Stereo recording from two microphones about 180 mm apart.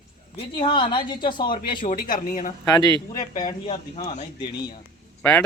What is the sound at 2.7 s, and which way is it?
A woman's voice, 25° left (ahead or behind).